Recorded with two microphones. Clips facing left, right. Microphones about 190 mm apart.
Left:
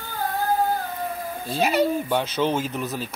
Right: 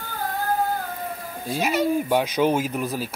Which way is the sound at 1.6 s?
35° left (ahead or behind).